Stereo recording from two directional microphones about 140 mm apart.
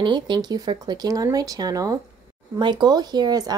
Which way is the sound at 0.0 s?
30° right (ahead or behind).